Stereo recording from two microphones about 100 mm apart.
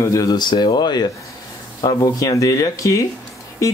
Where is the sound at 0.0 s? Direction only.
30° left (ahead or behind).